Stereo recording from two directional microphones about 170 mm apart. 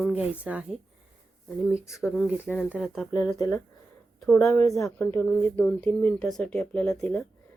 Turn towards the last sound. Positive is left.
turn(degrees=5)  # may be behind; listen again after turning